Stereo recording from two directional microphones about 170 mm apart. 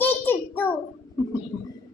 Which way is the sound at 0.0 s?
10° left (ahead or behind).